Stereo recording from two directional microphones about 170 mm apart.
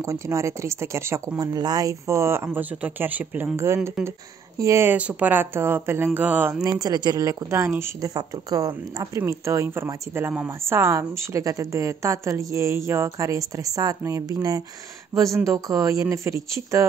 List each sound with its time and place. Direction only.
0.0 s speech: 15° right (ahead or behind)
6.6 s speech: 20° right (ahead or behind)